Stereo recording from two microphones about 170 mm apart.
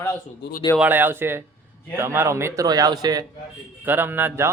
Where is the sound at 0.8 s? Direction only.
10° right (ahead or behind).